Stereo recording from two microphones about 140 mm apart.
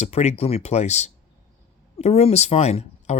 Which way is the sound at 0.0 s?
50° left (ahead or behind).